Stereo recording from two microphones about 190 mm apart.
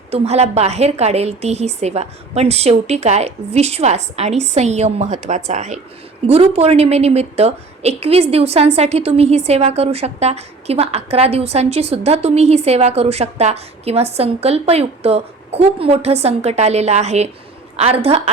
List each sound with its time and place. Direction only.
0.1 s a woman's voice: 35° right (ahead or behind)